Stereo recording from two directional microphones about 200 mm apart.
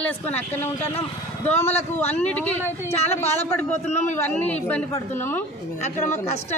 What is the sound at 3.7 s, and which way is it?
Speech, 35° left (ahead or behind).